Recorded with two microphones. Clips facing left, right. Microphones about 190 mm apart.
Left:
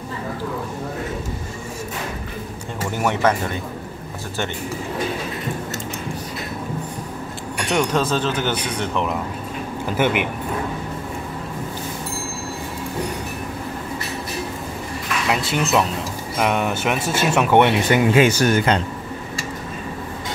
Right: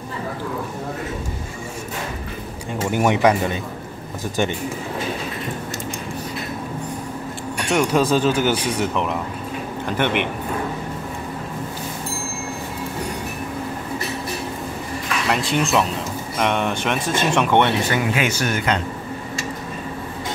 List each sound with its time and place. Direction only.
2.9 s speech: 15° right (ahead or behind)
7.6 s speech: 5° right (ahead or behind)
15.2 s speech: centre (ahead or behind)
18.1 s speech: 35° left (ahead or behind)